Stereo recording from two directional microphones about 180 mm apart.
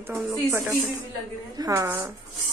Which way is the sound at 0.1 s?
15° right (ahead or behind).